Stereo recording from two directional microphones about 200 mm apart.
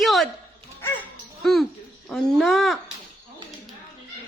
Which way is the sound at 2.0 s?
Centre (ahead or behind).